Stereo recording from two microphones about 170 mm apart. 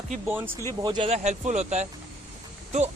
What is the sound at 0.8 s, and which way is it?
Speech, 25° right (ahead or behind).